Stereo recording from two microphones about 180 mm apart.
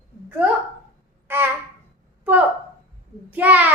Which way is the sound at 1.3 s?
10° right (ahead or behind).